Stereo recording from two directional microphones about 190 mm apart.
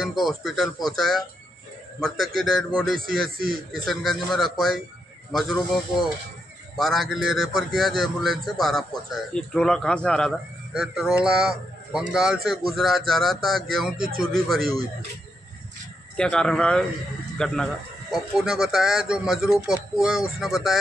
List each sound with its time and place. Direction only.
0.0 s a man's voice: centre (ahead or behind)
3.3 s speech: 50° right (ahead or behind)
3.7 s a man's voice: centre (ahead or behind)
6.8 s a man's voice: centre (ahead or behind)
13.9 s speech: 50° right (ahead or behind)
16.2 s a man's voice: 5° left (ahead or behind)